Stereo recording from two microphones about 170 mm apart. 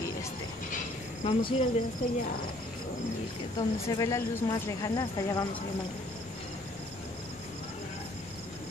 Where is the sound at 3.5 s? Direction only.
20° left (ahead or behind).